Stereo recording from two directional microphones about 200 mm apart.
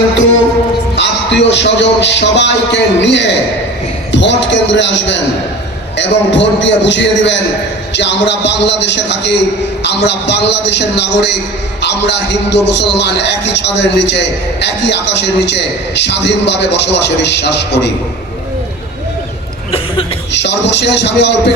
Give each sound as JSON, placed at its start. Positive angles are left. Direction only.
{"t": 0.9, "sound": "a man's voice", "side_deg": 60}
{"t": 20.3, "sound": "a man's voice", "side_deg": 60}